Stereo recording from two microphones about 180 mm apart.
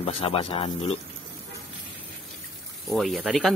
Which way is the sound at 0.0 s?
30° left (ahead or behind).